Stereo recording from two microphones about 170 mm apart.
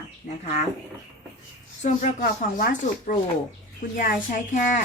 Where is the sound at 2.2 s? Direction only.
55° left (ahead or behind).